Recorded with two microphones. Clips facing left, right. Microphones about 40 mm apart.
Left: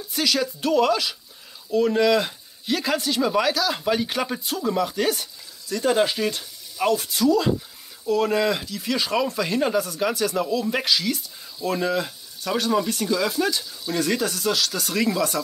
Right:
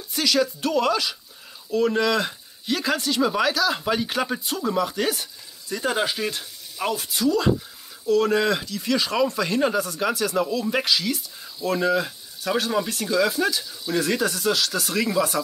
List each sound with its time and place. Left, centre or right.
0.1 s speech: centre